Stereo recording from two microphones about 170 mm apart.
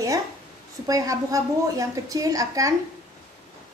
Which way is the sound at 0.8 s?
20° right (ahead or behind).